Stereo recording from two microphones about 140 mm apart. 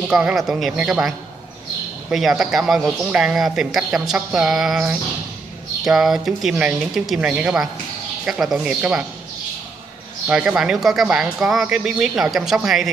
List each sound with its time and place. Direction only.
0.1 s speech: 5° right (ahead or behind)
5.9 s speech: 5° right (ahead or behind)
10.2 s speech: 5° right (ahead or behind)